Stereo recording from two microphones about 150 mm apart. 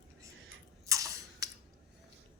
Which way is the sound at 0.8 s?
20° right (ahead or behind).